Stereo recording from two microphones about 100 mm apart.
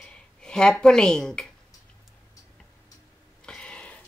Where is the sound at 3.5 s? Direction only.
10° left (ahead or behind).